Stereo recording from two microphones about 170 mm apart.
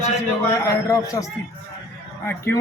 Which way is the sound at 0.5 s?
20° left (ahead or behind).